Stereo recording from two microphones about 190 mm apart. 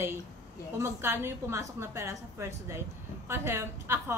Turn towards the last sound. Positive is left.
turn(degrees=-15)  # may be behind; listen again after turning